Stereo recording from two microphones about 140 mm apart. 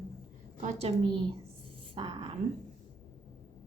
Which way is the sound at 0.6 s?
50° right (ahead or behind).